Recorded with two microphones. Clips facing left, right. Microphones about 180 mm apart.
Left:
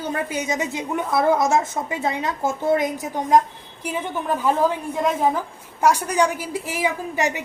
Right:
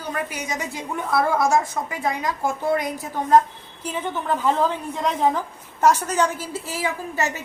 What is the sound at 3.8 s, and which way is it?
A woman's voice, 10° left (ahead or behind).